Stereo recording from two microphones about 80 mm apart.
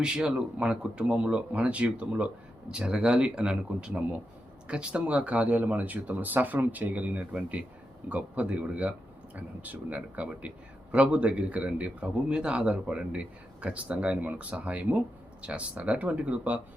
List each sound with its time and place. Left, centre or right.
0.0 s a man's voice: centre